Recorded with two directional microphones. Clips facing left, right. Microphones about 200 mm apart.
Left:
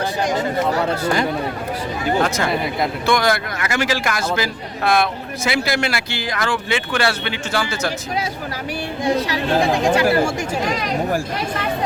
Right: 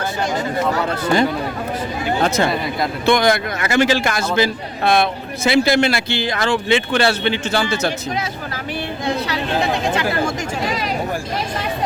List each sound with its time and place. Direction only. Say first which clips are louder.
2.2 s speech: right 2 dB; 25° right (ahead or behind)
9.0 s speech: left 3 dB; 10° left (ahead or behind)